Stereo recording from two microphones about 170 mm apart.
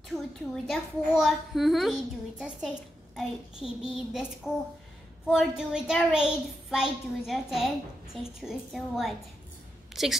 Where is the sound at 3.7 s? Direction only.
30° left (ahead or behind).